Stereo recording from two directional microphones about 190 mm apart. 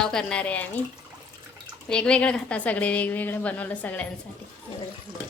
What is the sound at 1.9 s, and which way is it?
A woman's voice, 5° left (ahead or behind).